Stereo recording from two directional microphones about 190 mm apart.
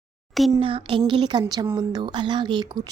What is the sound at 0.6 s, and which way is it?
A woman's voice, 25° right (ahead or behind).